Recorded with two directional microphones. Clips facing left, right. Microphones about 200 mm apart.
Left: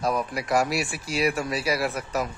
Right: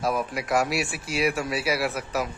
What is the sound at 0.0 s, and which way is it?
Speech, centre (ahead or behind).